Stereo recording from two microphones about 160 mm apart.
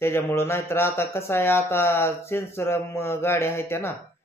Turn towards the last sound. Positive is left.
turn(degrees=15)  # may be behind; listen again after turning